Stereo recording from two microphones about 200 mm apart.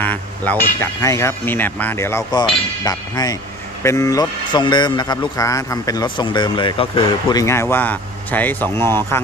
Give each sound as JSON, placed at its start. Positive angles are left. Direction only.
{"t": 0.0, "sound": "a man's voice", "side_deg": 10}